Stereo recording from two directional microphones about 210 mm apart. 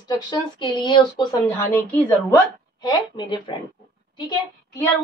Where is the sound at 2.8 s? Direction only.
20° left (ahead or behind).